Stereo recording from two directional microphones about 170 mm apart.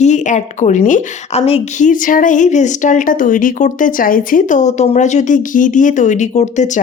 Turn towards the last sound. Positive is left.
turn(degrees=45)  # may be behind; listen again after turning